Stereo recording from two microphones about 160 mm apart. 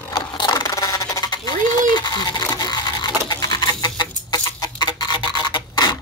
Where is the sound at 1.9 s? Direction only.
25° left (ahead or behind).